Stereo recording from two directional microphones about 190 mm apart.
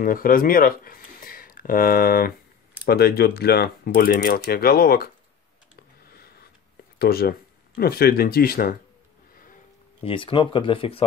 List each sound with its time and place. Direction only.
0.0 s speech: 50° left (ahead or behind)
6.0 s a sound: 55° left (ahead or behind)
7.0 s speech: 55° left (ahead or behind)
10.0 s speech: 25° left (ahead or behind)